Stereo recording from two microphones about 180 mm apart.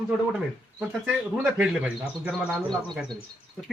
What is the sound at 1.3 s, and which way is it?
Speech, 5° right (ahead or behind).